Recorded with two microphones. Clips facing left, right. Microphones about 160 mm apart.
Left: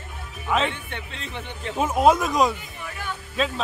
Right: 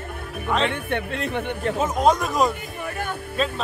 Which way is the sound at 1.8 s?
5° left (ahead or behind).